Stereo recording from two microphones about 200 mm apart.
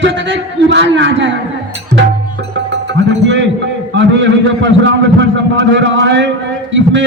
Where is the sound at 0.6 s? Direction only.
60° right (ahead or behind).